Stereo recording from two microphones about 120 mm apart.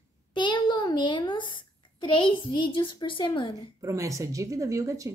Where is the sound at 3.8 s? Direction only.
25° right (ahead or behind).